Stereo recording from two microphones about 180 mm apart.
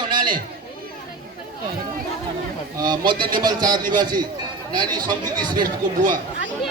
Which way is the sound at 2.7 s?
20° right (ahead or behind).